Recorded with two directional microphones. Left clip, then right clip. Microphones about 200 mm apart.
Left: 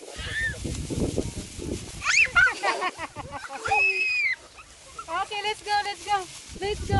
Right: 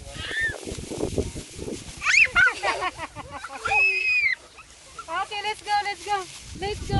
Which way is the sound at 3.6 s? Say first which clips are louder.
Right 2 dB; 30° right (ahead or behind).